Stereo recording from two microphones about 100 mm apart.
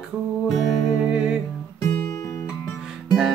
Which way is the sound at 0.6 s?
5° right (ahead or behind).